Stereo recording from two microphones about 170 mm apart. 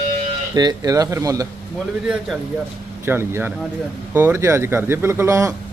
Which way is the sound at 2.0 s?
5° right (ahead or behind).